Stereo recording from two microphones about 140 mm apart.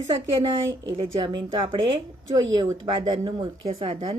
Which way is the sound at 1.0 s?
35° right (ahead or behind).